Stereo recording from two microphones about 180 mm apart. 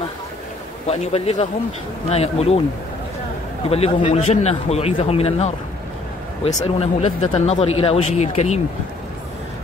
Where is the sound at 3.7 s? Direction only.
35° left (ahead or behind).